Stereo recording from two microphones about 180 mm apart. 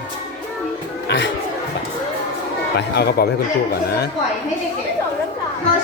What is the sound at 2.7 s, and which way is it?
Speech, 65° left (ahead or behind).